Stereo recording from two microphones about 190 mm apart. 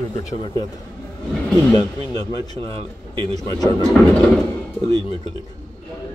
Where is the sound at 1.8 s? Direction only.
20° left (ahead or behind).